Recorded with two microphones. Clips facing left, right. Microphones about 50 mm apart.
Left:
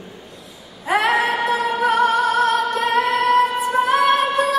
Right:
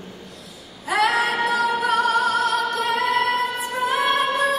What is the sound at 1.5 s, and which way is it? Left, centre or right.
Music, left.